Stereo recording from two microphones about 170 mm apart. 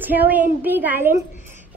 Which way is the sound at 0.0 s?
10° right (ahead or behind).